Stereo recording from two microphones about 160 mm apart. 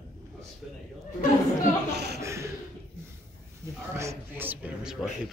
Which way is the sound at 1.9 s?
90° right.